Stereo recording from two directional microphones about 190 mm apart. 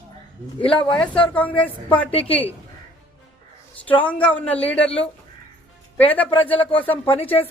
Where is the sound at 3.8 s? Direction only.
10° left (ahead or behind).